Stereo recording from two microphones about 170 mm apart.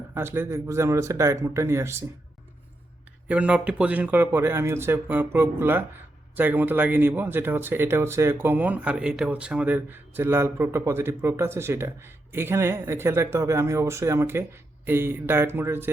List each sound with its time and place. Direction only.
0.1 s speech: 15° right (ahead or behind)
3.2 s speech: 5° right (ahead or behind)